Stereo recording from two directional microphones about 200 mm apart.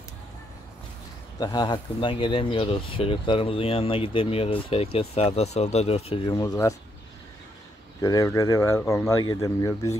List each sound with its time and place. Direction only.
1.4 s speech: 20° left (ahead or behind)
8.0 s speech: 15° left (ahead or behind)